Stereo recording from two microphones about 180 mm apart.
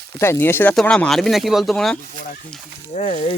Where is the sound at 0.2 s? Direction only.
15° left (ahead or behind).